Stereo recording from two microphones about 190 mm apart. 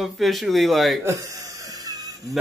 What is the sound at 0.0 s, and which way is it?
Speech, centre (ahead or behind).